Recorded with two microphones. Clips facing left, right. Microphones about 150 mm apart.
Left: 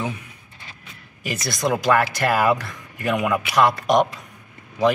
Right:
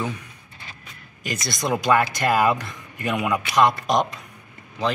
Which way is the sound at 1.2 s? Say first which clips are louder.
Left 3 dB; centre (ahead or behind).